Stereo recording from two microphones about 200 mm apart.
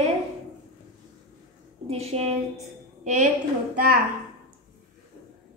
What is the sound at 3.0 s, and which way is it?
Speech, 40° right (ahead or behind).